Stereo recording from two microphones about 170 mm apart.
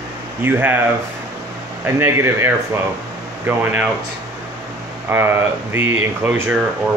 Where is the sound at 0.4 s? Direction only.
10° right (ahead or behind).